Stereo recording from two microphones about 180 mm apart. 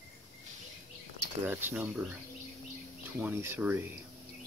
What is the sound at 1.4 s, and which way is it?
Speech, 10° right (ahead or behind).